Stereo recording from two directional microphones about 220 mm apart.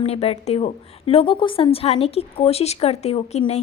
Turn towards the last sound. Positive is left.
turn(degrees=30)  # may be behind; listen again after turning